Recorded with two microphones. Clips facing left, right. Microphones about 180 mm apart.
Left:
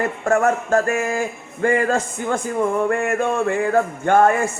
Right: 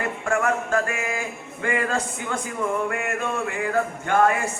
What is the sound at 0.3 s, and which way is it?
Speech, 45° left (ahead or behind).